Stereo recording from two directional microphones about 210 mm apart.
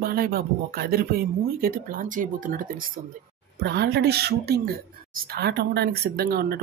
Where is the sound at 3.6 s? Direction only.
50° right (ahead or behind).